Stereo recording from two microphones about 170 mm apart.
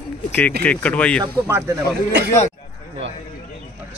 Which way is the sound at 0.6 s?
10° left (ahead or behind).